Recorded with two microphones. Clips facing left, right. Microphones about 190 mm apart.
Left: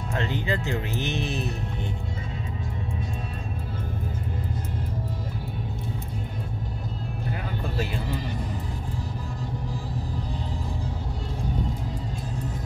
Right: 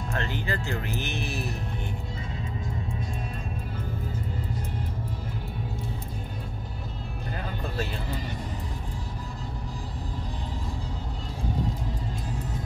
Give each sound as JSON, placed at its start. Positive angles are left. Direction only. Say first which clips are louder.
{"t": 0.1, "sound": "speech", "louder": "left 4 dB", "side_deg": 20}